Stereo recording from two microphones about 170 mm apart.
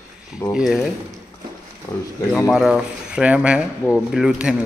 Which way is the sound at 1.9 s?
20° left (ahead or behind).